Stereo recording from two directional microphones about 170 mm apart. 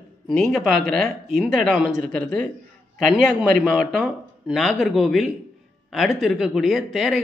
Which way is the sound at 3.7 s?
Centre (ahead or behind).